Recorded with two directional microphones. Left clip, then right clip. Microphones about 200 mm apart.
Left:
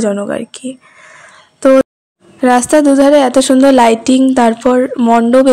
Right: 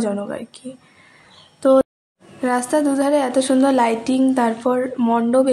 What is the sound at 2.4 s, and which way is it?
A woman's voice, 35° left (ahead or behind).